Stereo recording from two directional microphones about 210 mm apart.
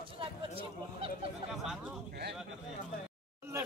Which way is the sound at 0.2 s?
25° right (ahead or behind).